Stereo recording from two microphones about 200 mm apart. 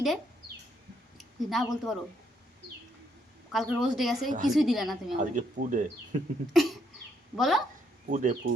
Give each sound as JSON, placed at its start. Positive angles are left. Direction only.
{"t": 1.2, "sound": "a woman's voice", "side_deg": 0}
{"t": 3.5, "sound": "a woman's voice", "side_deg": 0}
{"t": 5.2, "sound": "speech", "side_deg": -40}
{"t": 6.5, "sound": "a woman's voice", "side_deg": 0}
{"t": 8.1, "sound": "speech", "side_deg": -40}